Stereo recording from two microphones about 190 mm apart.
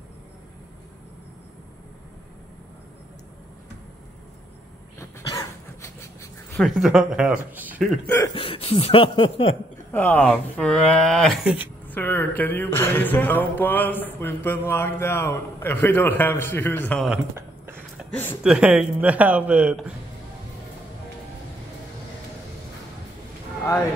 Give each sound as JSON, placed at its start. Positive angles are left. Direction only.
{"t": 4.9, "sound": "cough", "side_deg": 15}
{"t": 6.5, "sound": "speech", "side_deg": 0}
{"t": 8.4, "sound": "a sound", "side_deg": 30}
{"t": 9.9, "sound": "speech", "side_deg": 10}
{"t": 11.9, "sound": "mantra", "side_deg": 10}
{"t": 17.1, "sound": "a sound", "side_deg": -10}
{"t": 18.4, "sound": "speech", "side_deg": -5}